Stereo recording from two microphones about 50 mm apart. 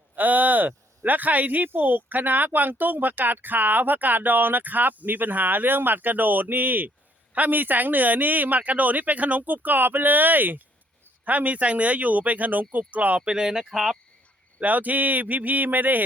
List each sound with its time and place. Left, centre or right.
0.2 s speech: right
13.2 s speech: centre
14.6 s speech: right